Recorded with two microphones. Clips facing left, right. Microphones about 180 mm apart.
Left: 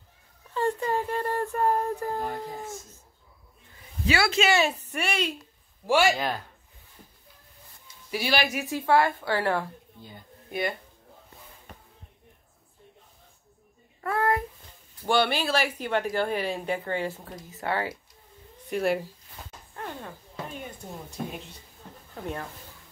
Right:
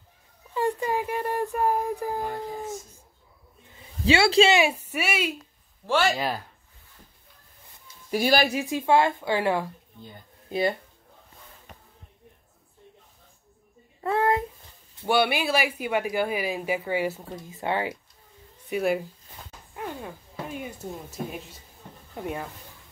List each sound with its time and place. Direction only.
0.6 s a sound: 15° right (ahead or behind)
4.0 s speech: 30° right (ahead or behind)
4.6 s speech: 10° right (ahead or behind)
5.9 s speech: 10° left (ahead or behind)
6.1 s speech: 5° right (ahead or behind)
8.1 s speech: 45° right (ahead or behind)
8.6 s speech: 20° right (ahead or behind)
14.0 s a sound: 20° right (ahead or behind)
15.0 s speech: 10° right (ahead or behind)
18.7 s speech: centre (ahead or behind)
19.7 s a sound: 10° right (ahead or behind)
22.1 s speech: 10° right (ahead or behind)